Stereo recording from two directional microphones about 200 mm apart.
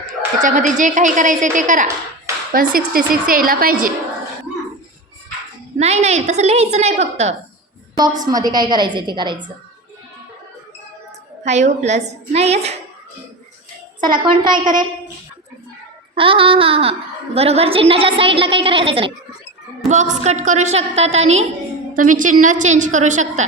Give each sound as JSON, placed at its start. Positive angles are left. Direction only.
{"t": 0.4, "sound": "a woman's voice", "side_deg": -40}
{"t": 5.8, "sound": "a woman's voice", "side_deg": -35}
{"t": 7.9, "sound": "a woman's voice", "side_deg": -20}
{"t": 11.4, "sound": "a woman's voice", "side_deg": -35}
{"t": 14.0, "sound": "a woman's voice", "side_deg": -25}
{"t": 16.1, "sound": "a woman's voice", "side_deg": -25}
{"t": 19.9, "sound": "a woman's voice", "side_deg": -35}